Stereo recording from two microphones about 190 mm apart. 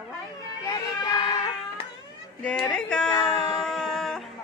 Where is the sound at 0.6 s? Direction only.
20° left (ahead or behind).